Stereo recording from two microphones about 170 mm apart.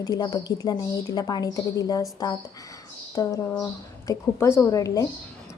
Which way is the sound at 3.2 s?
20° left (ahead or behind).